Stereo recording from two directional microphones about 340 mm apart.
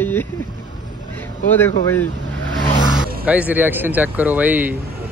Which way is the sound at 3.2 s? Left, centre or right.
Centre.